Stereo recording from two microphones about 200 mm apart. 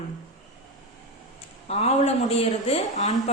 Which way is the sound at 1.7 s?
30° left (ahead or behind).